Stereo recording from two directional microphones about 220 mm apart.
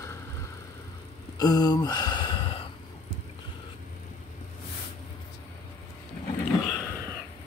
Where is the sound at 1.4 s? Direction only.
20° left (ahead or behind).